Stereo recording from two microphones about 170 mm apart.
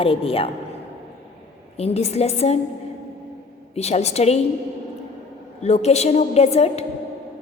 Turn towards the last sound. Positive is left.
turn(degrees=40)  # may be behind; listen again after turning